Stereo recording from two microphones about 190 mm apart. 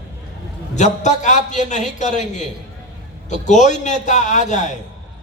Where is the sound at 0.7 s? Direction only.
40° left (ahead or behind).